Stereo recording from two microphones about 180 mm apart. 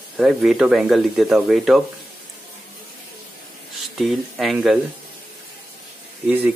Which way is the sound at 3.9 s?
Centre (ahead or behind).